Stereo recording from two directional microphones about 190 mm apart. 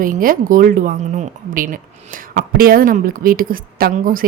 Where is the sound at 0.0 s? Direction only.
45° right (ahead or behind).